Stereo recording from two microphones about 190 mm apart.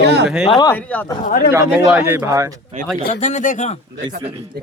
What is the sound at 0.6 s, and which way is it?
Speech, 10° left (ahead or behind).